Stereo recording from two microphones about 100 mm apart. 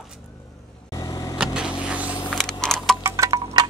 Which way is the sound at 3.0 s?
25° right (ahead or behind).